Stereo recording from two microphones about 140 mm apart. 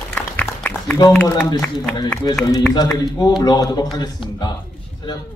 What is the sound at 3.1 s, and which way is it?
Speech, 30° left (ahead or behind).